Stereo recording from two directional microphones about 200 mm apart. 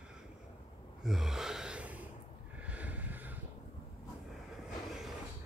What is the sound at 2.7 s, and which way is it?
Vehicle, 5° right (ahead or behind).